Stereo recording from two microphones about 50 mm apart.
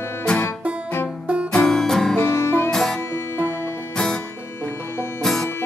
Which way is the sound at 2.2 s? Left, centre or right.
Left.